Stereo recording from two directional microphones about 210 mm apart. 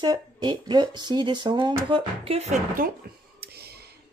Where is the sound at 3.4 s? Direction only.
50° right (ahead or behind).